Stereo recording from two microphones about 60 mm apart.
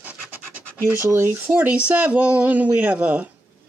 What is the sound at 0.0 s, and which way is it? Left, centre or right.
Scratch, right.